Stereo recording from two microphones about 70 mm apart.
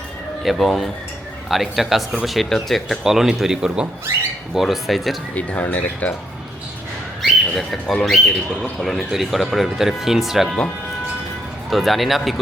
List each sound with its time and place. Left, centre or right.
0.6 s speech: centre
5.3 s speech: centre
7.2 s speech: centre
11.7 s speech: centre